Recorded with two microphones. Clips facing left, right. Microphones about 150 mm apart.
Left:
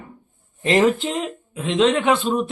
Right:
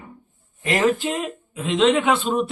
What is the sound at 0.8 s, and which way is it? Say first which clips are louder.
Speech: even; 5° right (ahead or behind).